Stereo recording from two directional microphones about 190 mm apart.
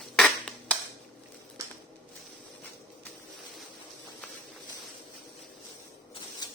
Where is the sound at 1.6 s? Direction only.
15° right (ahead or behind).